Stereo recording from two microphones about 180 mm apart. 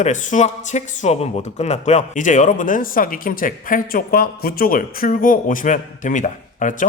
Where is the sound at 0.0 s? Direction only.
40° left (ahead or behind).